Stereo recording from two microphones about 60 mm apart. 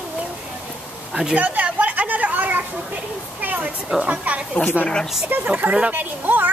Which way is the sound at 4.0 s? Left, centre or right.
Right.